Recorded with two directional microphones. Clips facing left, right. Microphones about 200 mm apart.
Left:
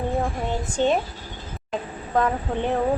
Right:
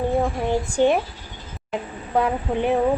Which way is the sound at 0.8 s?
10° right (ahead or behind).